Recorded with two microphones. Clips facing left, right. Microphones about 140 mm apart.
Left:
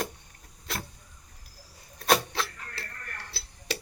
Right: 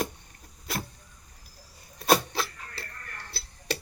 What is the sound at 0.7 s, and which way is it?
Vehicle, 5° right (ahead or behind).